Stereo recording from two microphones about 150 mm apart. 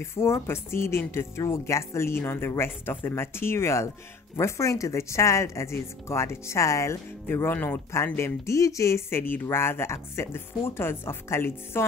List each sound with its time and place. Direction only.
0.0 s speech: 20° left (ahead or behind)